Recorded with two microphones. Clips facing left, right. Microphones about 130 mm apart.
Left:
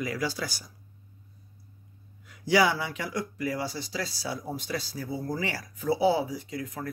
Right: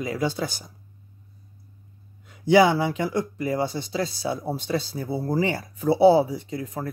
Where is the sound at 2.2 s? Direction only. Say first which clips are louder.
Right 6 dB; 25° right (ahead or behind).